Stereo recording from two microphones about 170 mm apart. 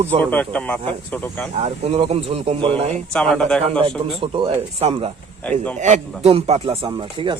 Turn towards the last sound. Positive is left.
turn(degrees=-30)  # may be behind; listen again after turning